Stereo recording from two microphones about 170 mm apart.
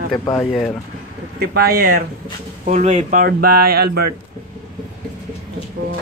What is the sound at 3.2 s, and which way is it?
Speech, 60° right (ahead or behind).